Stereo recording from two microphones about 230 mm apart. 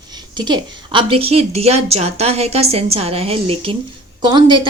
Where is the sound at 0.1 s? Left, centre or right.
Centre.